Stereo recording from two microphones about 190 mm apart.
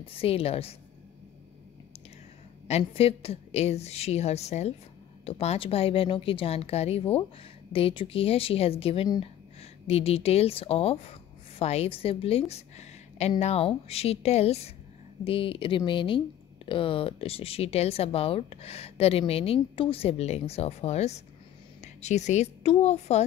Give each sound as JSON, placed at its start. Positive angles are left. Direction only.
{"t": 0.2, "sound": "speech", "side_deg": 30}
{"t": 2.7, "sound": "a woman's voice", "side_deg": 30}